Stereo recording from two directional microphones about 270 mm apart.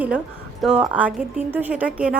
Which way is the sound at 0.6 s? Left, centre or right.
Centre.